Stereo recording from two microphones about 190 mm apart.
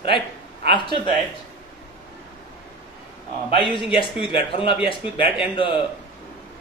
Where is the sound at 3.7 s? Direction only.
25° left (ahead or behind).